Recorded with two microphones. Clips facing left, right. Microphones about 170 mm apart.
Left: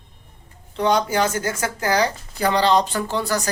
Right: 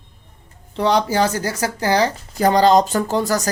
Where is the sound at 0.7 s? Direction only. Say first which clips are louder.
Right 2 dB; 35° right (ahead or behind).